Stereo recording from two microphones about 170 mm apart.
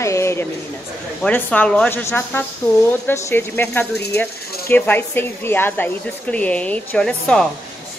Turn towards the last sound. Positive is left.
turn(degrees=5)  # may be behind; listen again after turning